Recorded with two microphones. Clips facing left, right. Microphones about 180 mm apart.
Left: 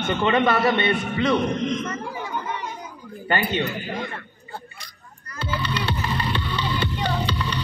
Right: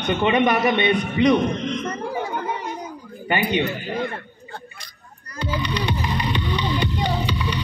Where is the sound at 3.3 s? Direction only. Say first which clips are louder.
Right 2 dB; 15° right (ahead or behind).